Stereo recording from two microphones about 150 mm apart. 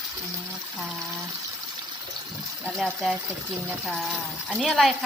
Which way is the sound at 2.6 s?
Centre (ahead or behind).